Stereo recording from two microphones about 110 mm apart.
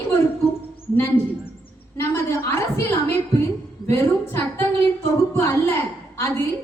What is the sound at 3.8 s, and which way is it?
A woman's voice, 25° left (ahead or behind).